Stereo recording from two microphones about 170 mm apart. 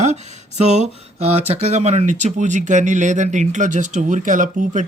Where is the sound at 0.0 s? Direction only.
40° right (ahead or behind).